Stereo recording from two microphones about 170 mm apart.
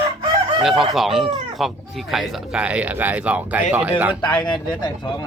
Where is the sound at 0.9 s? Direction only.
Centre (ahead or behind).